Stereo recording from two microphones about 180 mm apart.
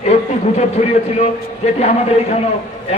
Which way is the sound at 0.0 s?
40° left (ahead or behind).